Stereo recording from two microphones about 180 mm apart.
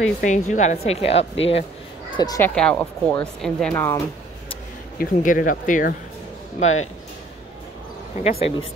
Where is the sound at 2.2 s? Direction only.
20° left (ahead or behind).